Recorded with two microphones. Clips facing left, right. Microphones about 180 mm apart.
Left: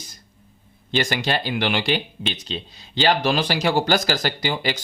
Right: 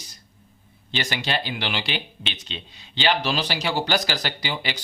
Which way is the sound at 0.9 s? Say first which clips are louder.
Left 5 dB; 45° left (ahead or behind).